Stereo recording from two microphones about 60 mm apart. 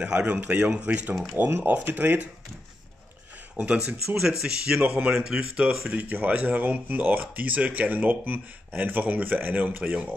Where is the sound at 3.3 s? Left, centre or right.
Right.